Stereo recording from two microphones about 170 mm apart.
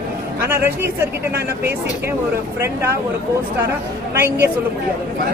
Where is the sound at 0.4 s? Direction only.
10° right (ahead or behind).